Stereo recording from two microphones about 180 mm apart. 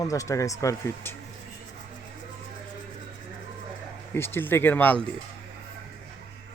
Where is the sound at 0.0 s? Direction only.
20° left (ahead or behind).